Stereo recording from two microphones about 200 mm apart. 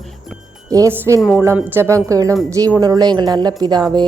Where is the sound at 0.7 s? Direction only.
15° right (ahead or behind).